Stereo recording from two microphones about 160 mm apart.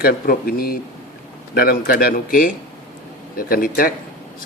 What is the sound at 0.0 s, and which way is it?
Speech, 65° left (ahead or behind).